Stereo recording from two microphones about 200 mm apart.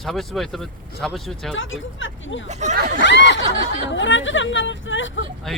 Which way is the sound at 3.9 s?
70° left (ahead or behind).